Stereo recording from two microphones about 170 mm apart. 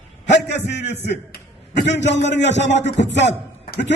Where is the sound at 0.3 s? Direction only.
90° left.